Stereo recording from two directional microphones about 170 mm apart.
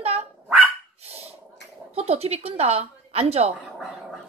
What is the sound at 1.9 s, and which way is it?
A woman's voice, 35° right (ahead or behind).